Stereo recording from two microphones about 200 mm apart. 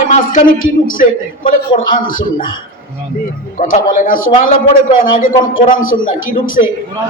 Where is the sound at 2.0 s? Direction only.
45° left (ahead or behind).